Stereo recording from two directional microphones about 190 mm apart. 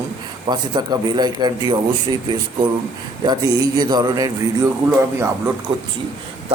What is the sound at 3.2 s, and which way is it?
A man's voice, 20° right (ahead or behind).